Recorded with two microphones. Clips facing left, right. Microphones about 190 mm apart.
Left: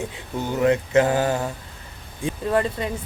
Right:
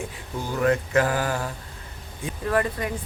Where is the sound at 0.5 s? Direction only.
20° left (ahead or behind).